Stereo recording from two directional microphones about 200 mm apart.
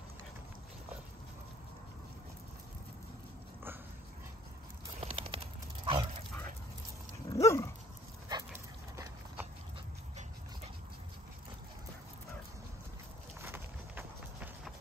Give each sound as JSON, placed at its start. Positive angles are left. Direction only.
{"t": 5.0, "sound": "a sound", "side_deg": -25}
{"t": 7.2, "sound": "dog", "side_deg": 15}
{"t": 8.3, "sound": "dog", "side_deg": -15}
{"t": 13.4, "sound": "clip-clop", "side_deg": -10}